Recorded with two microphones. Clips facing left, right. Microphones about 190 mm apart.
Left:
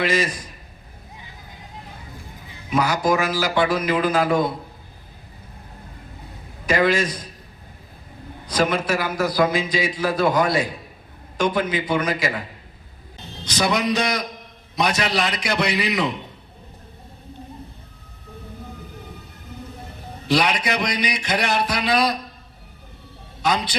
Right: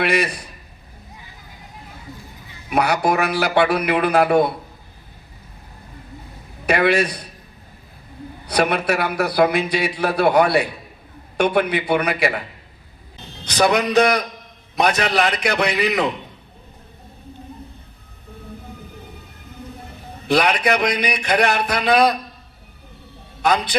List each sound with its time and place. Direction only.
0.0 s a man's voice: 65° right (ahead or behind)
2.6 s a man's voice: 65° right (ahead or behind)
6.7 s a man's voice: 65° right (ahead or behind)
8.4 s a man's voice: 65° right (ahead or behind)
13.4 s a man's voice: 60° right (ahead or behind)
20.2 s a man's voice: 55° right (ahead or behind)
23.4 s a man's voice: 60° right (ahead or behind)